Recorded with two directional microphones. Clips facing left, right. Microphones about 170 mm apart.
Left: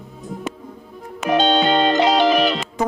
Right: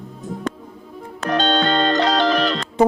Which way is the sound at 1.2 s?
10° left (ahead or behind).